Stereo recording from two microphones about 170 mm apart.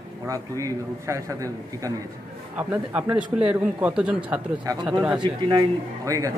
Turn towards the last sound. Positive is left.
turn(degrees=-20)  # may be behind; listen again after turning